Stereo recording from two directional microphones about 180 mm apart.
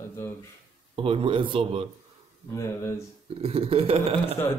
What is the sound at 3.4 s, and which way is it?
Speech, 35° right (ahead or behind).